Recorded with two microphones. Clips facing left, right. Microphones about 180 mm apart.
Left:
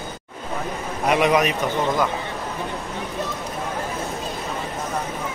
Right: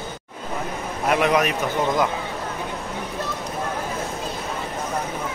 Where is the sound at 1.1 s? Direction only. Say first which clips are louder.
Left 1 dB; centre (ahead or behind).